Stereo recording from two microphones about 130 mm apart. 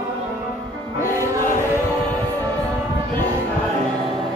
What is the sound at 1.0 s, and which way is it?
Music, 20° right (ahead or behind).